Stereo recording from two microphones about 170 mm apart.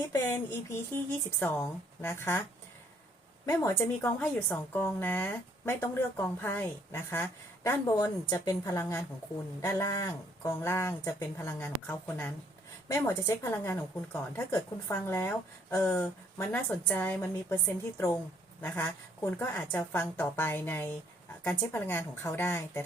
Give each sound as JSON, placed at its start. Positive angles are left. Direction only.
{"t": 1.4, "sound": "a woman's voice", "side_deg": 10}
{"t": 3.4, "sound": "a woman's voice", "side_deg": 20}